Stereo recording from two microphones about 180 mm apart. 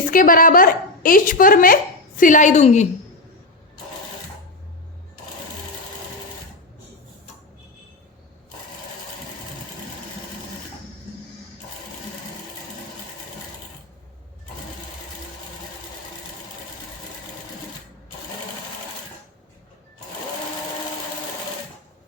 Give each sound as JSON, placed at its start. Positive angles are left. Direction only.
{"t": 0.0, "sound": "a woman's voice", "side_deg": 50}